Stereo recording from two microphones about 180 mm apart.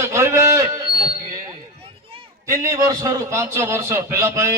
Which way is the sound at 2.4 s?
15° right (ahead or behind).